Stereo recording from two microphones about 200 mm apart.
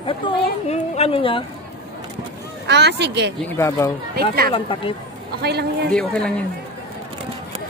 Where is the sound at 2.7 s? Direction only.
55° right (ahead or behind).